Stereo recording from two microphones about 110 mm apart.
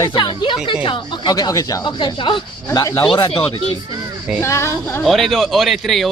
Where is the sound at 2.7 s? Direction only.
35° left (ahead or behind).